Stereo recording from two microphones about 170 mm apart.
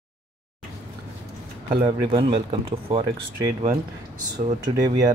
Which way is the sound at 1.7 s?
30° right (ahead or behind).